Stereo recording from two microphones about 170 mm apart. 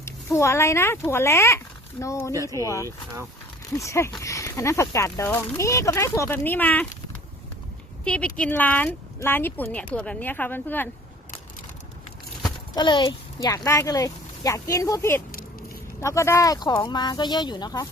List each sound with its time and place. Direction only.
0.0 s speech: 15° left (ahead or behind)
8.0 s speech: 5° left (ahead or behind)
12.7 s a child's voice: 30° left (ahead or behind)